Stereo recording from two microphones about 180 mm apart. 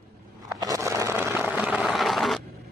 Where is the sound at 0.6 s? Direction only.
20° right (ahead or behind); by 2.4 s centre (ahead or behind).